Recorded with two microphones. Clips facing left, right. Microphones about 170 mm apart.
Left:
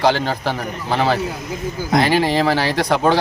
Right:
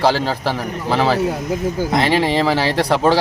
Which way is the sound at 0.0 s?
35° right (ahead or behind).